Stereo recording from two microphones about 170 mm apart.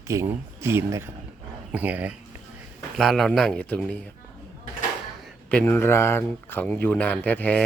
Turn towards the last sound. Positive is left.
turn(degrees=10)  # may be behind; listen again after turning